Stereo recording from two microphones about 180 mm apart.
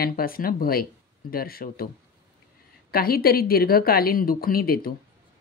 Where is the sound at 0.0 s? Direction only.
55° left (ahead or behind).